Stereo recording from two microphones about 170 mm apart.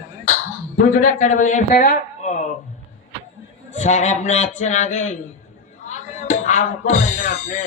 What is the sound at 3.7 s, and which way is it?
A man's voice, 45° left (ahead or behind).